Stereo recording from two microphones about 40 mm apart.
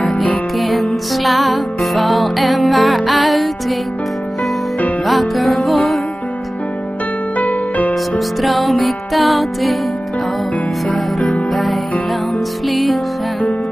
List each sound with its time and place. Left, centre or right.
0.1 s music: centre
5.0 s music: centre
7.3 s music: left
8.4 s music: centre
11.5 s music: centre